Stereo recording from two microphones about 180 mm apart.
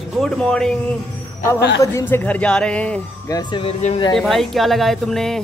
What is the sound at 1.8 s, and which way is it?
Speech, 15° left (ahead or behind).